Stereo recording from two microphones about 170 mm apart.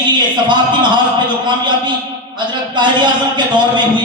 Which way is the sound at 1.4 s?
25° right (ahead or behind).